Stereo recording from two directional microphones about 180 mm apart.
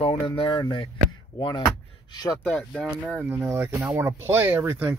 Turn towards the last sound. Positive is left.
turn(degrees=-15)  # may be behind; listen again after turning